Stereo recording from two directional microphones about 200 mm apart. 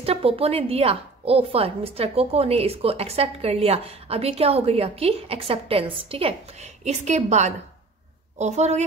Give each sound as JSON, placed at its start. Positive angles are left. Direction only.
{"t": 0.0, "sound": "a woman's voice", "side_deg": -30}